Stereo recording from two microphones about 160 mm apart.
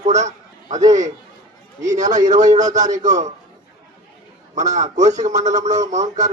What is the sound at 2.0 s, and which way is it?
A man's voice, 50° right (ahead or behind).